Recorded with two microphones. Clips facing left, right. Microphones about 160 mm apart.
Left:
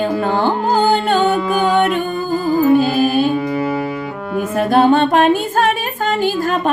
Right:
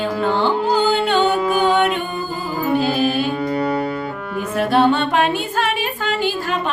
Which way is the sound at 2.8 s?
45° left (ahead or behind).